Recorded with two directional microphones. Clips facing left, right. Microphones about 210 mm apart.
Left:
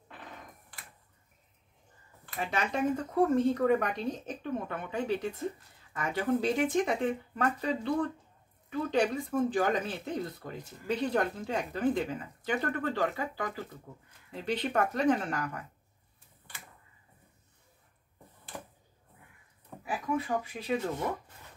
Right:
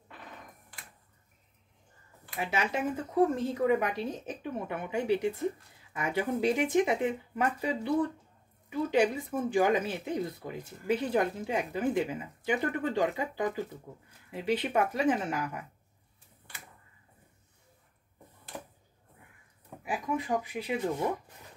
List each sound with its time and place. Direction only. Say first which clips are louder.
2.3 s speech: right 1 dB; 10° right (ahead or behind)
19.8 s speech: even; 15° right (ahead or behind)